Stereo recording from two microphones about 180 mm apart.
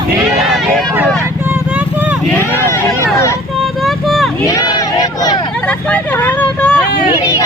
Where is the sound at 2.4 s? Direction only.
10° left (ahead or behind).